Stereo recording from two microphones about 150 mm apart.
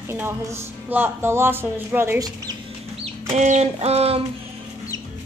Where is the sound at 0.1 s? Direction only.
15° right (ahead or behind).